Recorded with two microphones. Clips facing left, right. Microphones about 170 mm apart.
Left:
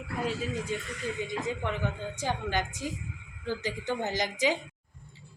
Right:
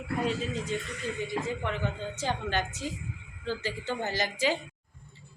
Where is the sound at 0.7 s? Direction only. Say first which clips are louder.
Even; 10° left (ahead or behind).